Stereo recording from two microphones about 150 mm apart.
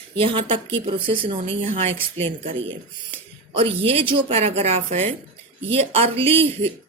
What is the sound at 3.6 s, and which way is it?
Speech, 40° right (ahead or behind).